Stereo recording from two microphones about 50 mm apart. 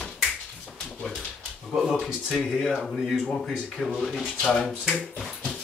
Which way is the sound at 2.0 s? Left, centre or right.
Centre.